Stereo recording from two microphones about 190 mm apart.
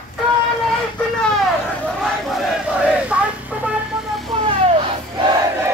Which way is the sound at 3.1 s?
5° right (ahead or behind).